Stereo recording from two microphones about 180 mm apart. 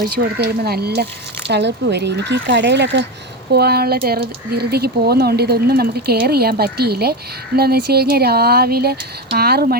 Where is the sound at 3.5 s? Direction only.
60° right (ahead or behind).